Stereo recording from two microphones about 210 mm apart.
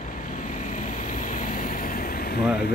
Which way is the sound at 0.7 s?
40° left (ahead or behind).